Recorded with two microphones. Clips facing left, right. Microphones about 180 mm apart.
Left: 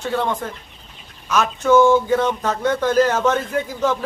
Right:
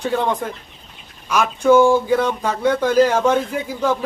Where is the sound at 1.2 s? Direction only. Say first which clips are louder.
Right 3 dB; 10° right (ahead or behind).